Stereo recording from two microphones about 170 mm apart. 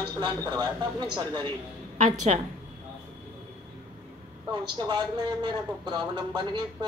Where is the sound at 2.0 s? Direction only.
40° right (ahead or behind).